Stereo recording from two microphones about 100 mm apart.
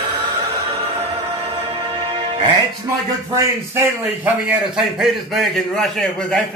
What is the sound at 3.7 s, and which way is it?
Speech, 20° right (ahead or behind).